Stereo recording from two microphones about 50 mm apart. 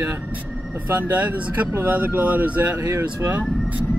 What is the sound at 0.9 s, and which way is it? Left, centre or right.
Speech, right.